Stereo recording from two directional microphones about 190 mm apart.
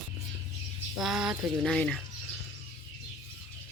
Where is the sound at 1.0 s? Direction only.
5° right (ahead or behind).